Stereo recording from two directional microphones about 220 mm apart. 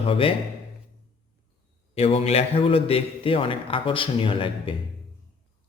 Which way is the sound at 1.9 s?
30° left (ahead or behind).